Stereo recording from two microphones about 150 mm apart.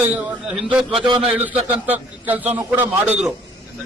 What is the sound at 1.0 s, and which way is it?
Speech, 35° right (ahead or behind).